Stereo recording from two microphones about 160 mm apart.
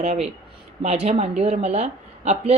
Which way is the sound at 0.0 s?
40° right (ahead or behind).